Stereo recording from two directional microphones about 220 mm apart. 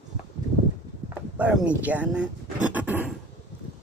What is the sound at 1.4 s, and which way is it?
Speech, 5° right (ahead or behind).